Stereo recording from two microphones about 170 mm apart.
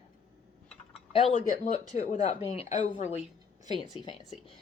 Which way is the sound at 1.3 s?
50° left (ahead or behind).